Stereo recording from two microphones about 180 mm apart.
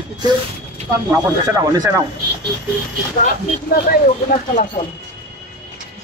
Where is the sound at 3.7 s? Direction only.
55° left (ahead or behind).